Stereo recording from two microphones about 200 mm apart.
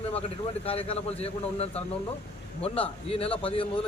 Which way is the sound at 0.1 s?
30° left (ahead or behind).